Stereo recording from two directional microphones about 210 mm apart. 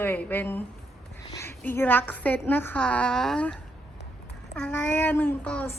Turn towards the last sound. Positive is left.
turn(degrees=5)  # may be behind; listen again after turning